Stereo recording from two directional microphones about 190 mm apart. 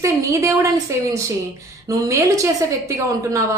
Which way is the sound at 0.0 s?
15° right (ahead or behind).